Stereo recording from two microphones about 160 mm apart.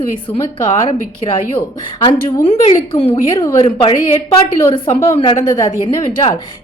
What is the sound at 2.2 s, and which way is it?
A woman's voice, 30° left (ahead or behind).